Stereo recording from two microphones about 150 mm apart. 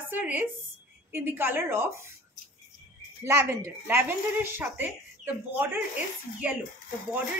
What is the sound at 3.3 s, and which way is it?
A woman's voice, 15° right (ahead or behind).